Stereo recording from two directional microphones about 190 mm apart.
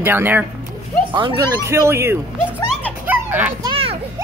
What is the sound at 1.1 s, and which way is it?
Speech, 25° right (ahead or behind).